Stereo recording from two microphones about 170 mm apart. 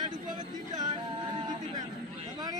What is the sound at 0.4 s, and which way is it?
Singing, 25° right (ahead or behind).